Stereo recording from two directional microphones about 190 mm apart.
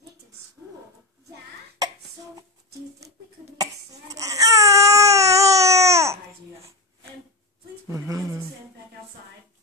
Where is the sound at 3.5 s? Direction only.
20° right (ahead or behind).